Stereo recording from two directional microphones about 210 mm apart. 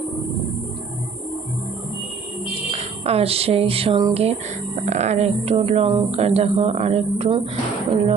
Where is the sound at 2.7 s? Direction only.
30° right (ahead or behind).